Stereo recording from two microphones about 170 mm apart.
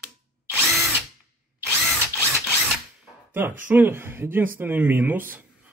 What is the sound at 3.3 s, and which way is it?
Speech, 10° right (ahead or behind).